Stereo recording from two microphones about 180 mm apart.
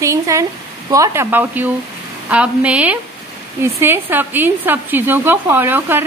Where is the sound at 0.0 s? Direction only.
15° right (ahead or behind).